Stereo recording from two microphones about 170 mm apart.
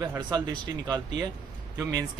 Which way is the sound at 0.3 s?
25° right (ahead or behind).